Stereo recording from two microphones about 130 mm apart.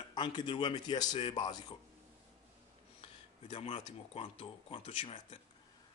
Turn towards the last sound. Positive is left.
turn(degrees=45)  # may be behind; listen again after turning